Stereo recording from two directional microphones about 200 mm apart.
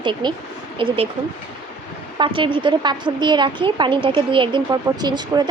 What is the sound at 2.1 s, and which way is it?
A woman's voice, 25° right (ahead or behind).